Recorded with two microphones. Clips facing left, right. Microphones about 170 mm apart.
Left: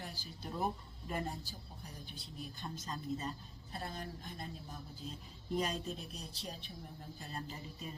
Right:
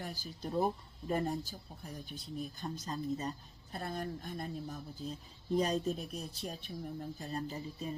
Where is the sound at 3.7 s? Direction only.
50° right (ahead or behind).